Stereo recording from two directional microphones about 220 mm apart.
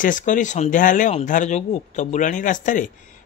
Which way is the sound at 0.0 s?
35° left (ahead or behind).